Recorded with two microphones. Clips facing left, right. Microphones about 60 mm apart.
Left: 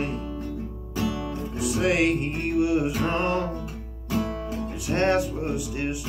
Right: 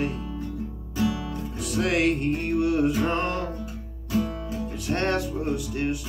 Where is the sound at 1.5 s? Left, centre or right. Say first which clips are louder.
Left 2 dB; centre.